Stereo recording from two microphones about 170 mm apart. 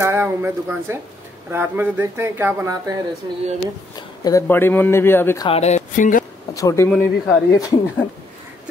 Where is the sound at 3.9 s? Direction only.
20° left (ahead or behind).